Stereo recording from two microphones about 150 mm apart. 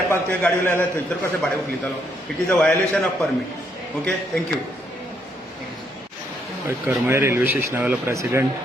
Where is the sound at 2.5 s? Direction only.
5° left (ahead or behind).